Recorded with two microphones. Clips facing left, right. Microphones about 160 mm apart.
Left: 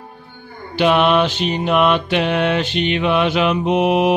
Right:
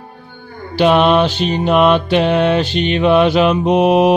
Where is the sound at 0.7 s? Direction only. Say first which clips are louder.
Right 3 dB; 35° right (ahead or behind).